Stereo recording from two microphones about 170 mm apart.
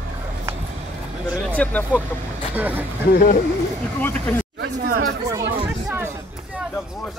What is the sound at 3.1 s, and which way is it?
Speech, 60° left (ahead or behind).